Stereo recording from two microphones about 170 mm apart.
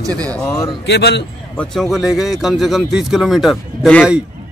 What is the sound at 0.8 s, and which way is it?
Speech, 85° left.